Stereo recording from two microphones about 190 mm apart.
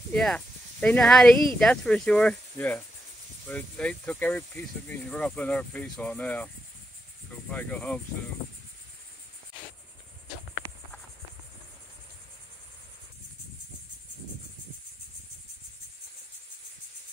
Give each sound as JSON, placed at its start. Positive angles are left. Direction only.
{"t": 0.1, "sound": "speech", "side_deg": 5}
{"t": 7.5, "sound": "speech", "side_deg": 10}
{"t": 10.6, "sound": "a sound", "side_deg": -15}